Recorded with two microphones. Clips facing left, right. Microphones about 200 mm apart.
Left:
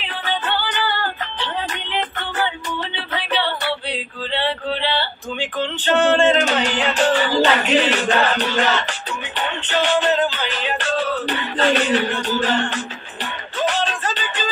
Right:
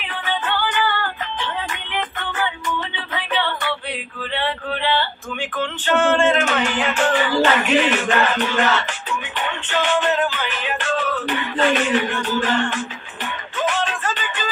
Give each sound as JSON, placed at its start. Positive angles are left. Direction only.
{"t": 0.0, "sound": "music", "side_deg": 30}
{"t": 4.3, "sound": "a sound", "side_deg": 30}
{"t": 9.4, "sound": "music", "side_deg": 35}